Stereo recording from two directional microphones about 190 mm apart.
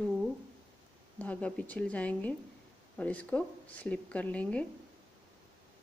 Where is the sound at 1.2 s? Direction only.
5° left (ahead or behind).